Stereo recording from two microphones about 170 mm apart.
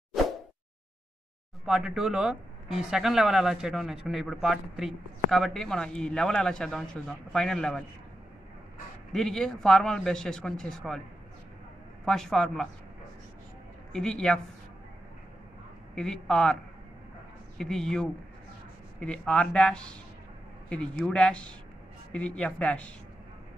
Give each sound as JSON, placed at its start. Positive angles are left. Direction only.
{"t": 1.7, "sound": "speech", "side_deg": -5}
{"t": 9.1, "sound": "speech", "side_deg": 0}
{"t": 12.0, "sound": "speech", "side_deg": 5}
{"t": 13.9, "sound": "speech", "side_deg": 5}
{"t": 15.9, "sound": "speech", "side_deg": 5}
{"t": 17.6, "sound": "speech", "side_deg": 5}